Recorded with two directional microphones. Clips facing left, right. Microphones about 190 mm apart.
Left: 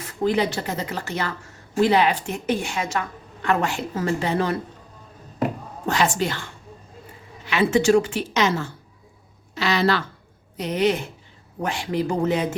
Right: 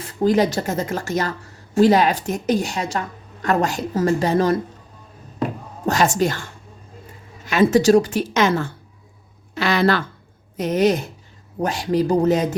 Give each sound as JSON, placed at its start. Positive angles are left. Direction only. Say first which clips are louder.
{"t": 0.1, "sound": "speech", "louder": "right 4 dB", "side_deg": -40}
{"t": 5.8, "sound": "a woman's voice", "louder": "right 4 dB", "side_deg": -40}
{"t": 7.4, "sound": "a woman's voice", "louder": "right 4 dB", "side_deg": -45}